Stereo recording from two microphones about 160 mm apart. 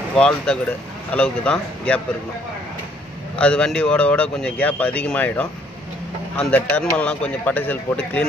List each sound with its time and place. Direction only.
0.1 s speech: 5° left (ahead or behind)
3.3 s speech: 5° left (ahead or behind)